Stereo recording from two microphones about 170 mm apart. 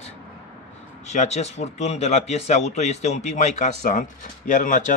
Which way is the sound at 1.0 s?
45° left (ahead or behind).